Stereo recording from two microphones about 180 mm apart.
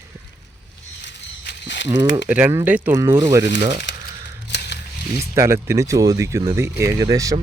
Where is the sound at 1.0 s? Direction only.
75° left (ahead or behind).